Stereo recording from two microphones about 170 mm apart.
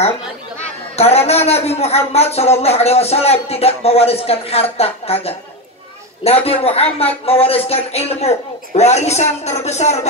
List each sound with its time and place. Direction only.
0.9 s music: 40° left (ahead or behind)